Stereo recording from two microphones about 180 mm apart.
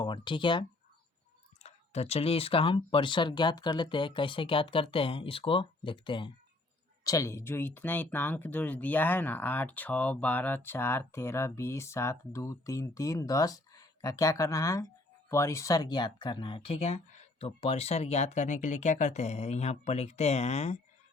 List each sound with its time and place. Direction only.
0.0 s speech: 25° left (ahead or behind)
1.6 s speech: 35° left (ahead or behind)
7.0 s speech: 20° left (ahead or behind); by 20.7 s 35° left (ahead or behind)